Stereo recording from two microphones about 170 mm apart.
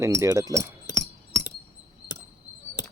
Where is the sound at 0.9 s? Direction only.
90° left.